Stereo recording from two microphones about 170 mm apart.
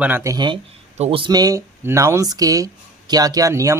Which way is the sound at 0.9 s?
40° right (ahead or behind).